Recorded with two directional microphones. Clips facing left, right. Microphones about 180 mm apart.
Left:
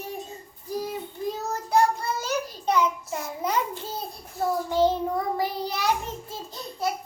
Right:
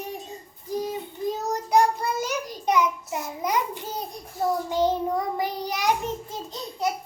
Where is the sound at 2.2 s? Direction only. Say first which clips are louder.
Even; 15° right (ahead or behind).